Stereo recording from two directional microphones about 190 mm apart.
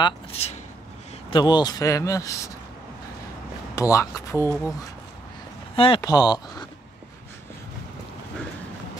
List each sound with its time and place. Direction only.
0.0 s speech: 30° left (ahead or behind); by 2.5 s 15° left (ahead or behind)
3.7 s speech: 15° left (ahead or behind)